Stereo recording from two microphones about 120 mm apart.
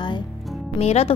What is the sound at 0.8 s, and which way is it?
Speech, 60° left (ahead or behind).